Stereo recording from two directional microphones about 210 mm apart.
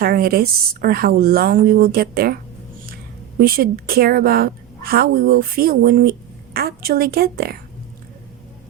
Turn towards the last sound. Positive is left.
turn(degrees=-45)  # may be behind; listen again after turning